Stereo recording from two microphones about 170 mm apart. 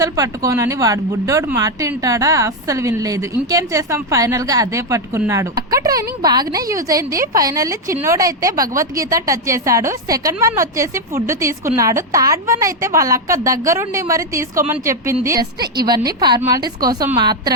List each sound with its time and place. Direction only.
0.0 s a woman's voice: 20° right (ahead or behind)
15.6 s a woman's voice: 65° right (ahead or behind)
15.9 s speech: 25° right (ahead or behind)